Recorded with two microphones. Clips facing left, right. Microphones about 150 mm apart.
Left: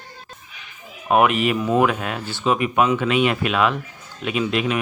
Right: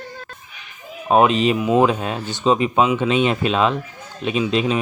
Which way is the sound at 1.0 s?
25° right (ahead or behind).